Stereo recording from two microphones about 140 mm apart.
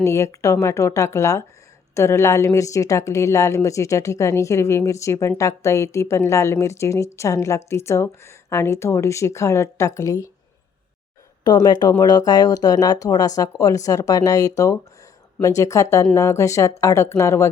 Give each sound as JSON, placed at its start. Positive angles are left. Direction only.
{"t": 0.0, "sound": "a woman's voice", "side_deg": 20}
{"t": 11.4, "sound": "a woman's voice", "side_deg": 30}